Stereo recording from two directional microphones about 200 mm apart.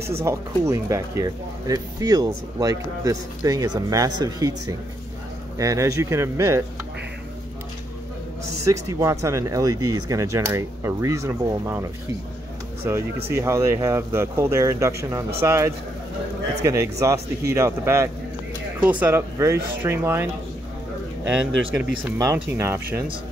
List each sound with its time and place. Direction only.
0.2 s speech: 15° right (ahead or behind)
8.6 s speech: 15° right (ahead or behind)
12.8 s speech: 15° right (ahead or behind)
22.2 s speech: 15° right (ahead or behind)